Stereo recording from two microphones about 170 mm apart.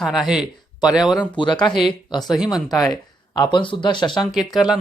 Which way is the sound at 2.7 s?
Centre (ahead or behind).